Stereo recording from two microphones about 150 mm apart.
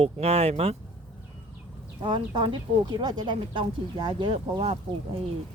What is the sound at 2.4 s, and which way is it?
Speech, 30° right (ahead or behind).